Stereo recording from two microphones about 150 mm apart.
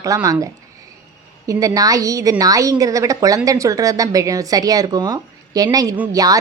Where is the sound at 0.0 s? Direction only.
25° right (ahead or behind).